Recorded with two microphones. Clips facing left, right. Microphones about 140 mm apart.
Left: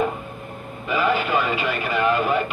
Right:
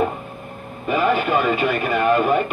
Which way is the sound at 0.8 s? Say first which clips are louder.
Right 3 dB; 50° right (ahead or behind).